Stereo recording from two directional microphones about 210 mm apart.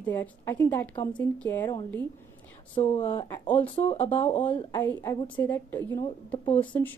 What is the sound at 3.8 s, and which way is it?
Speech, 30° left (ahead or behind).